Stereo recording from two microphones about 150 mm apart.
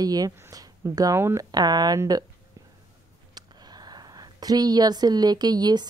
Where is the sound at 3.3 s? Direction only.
25° right (ahead or behind).